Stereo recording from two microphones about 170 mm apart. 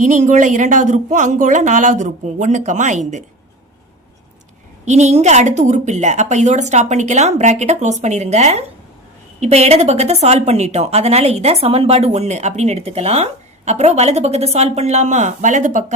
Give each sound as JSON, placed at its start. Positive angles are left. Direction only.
{"t": 0.0, "sound": "a woman's voice", "side_deg": -45}
{"t": 4.9, "sound": "a woman's voice", "side_deg": -40}